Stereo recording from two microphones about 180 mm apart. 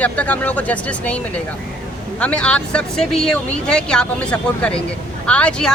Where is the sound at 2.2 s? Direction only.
5° left (ahead or behind).